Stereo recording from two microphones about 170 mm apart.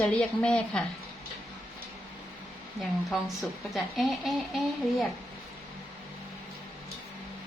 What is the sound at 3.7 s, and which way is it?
Speech, centre (ahead or behind).